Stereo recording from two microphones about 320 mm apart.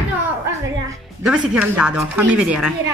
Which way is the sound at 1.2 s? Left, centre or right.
Centre.